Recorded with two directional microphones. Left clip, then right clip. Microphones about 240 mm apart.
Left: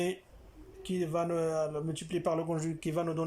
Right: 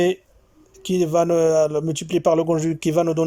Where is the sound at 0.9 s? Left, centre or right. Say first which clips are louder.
Right 14 dB; right.